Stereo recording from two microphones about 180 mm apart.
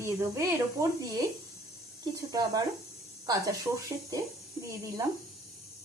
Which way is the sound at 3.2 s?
20° right (ahead or behind).